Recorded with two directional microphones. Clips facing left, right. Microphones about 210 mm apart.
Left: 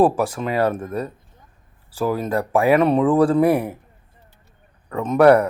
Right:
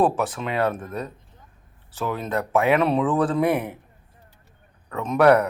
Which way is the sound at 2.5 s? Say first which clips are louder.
Left 3 dB; 35° left (ahead or behind).